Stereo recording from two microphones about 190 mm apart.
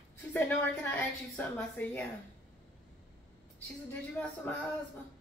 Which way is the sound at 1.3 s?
10° left (ahead or behind).